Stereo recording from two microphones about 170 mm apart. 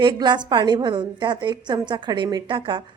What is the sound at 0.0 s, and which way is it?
A woman's voice, 25° right (ahead or behind).